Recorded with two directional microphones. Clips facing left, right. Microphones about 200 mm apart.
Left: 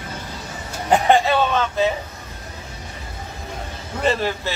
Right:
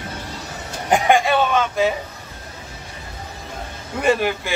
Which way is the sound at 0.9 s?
15° right (ahead or behind).